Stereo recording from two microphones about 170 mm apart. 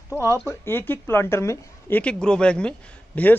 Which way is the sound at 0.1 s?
15° left (ahead or behind).